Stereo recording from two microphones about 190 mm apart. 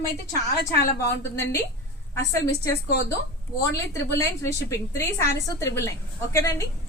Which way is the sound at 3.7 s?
15° left (ahead or behind).